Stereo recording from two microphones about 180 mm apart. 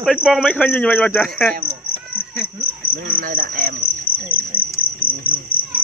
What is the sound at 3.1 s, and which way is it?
Cricket, 50° right (ahead or behind).